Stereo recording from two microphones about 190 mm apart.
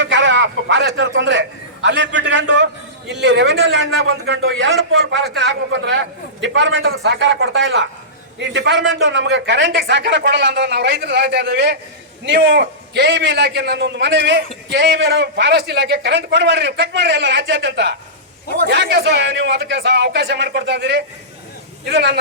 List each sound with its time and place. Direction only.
0.0 s a sound: 75° right (ahead or behind)
3.2 s a man's voice: 65° right (ahead or behind); by 5.2 s 85° right
5.3 s a man's voice: 70° right (ahead or behind)